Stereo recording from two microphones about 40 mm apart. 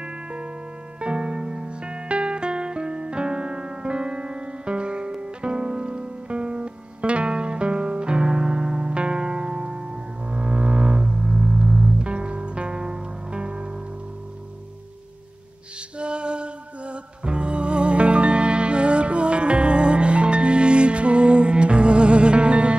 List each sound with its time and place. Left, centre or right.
0.0 s music: right
10.3 s double bass: right
16.0 s music: right